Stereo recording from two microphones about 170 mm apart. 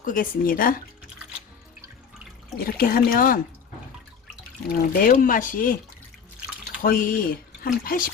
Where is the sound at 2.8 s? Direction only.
60° left (ahead or behind).